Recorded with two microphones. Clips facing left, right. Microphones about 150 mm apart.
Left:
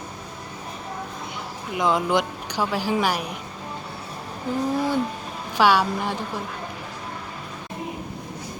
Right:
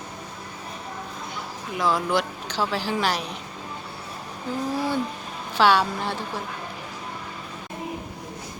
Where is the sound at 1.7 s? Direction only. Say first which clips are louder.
Left 2 dB; 20° left (ahead or behind).